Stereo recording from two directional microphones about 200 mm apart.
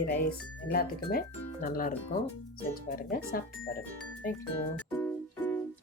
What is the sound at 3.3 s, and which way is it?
Speech, 45° left (ahead or behind).